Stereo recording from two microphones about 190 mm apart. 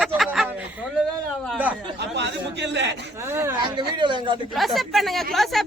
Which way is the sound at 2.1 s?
65° right (ahead or behind).